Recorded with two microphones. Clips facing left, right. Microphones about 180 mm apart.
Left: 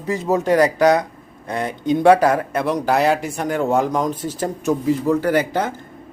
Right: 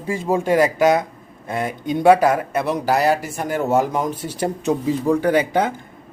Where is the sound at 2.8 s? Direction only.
Centre (ahead or behind).